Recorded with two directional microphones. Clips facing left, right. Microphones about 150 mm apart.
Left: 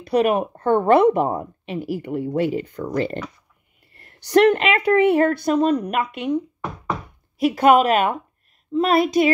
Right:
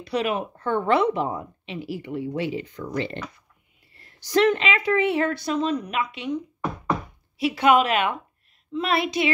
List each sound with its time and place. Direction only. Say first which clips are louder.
0.0 s a woman's voice: left 7 dB; 50° left (ahead or behind)
3.9 s a woman's voice: left 6 dB; 55° left (ahead or behind)
7.3 s a woman's voice: left 4 dB; 45° left (ahead or behind)